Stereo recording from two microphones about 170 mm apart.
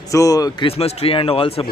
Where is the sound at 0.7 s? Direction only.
35° left (ahead or behind).